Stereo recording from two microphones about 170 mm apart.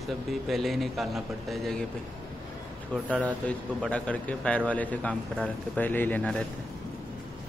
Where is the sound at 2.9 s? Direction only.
10° left (ahead or behind).